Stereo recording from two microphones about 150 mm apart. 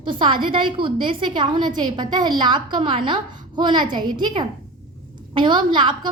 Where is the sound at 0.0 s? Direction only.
35° right (ahead or behind).